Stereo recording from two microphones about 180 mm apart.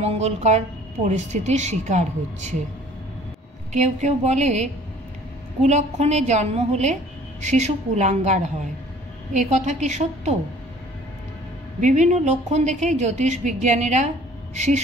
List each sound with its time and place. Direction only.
0.0 s a woman's voice: 40° right (ahead or behind)
3.7 s a woman's voice: 40° right (ahead or behind)
11.8 s a woman's voice: 40° right (ahead or behind)